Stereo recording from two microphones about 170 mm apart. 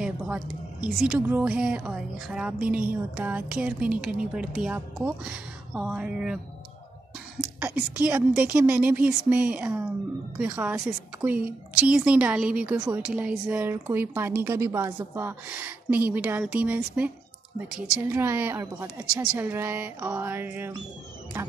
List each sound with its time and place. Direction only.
0.0 s a woman's voice: 5° right (ahead or behind)
7.6 s a woman's voice: 10° right (ahead or behind)